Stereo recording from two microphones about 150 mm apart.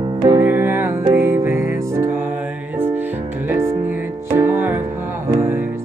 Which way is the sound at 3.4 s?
15° right (ahead or behind).